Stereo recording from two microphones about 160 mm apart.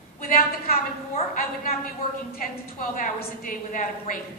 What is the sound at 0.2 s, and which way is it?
A woman's voice, 60° left (ahead or behind).